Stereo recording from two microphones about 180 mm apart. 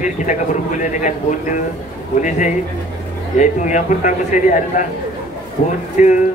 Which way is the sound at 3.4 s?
45° left (ahead or behind).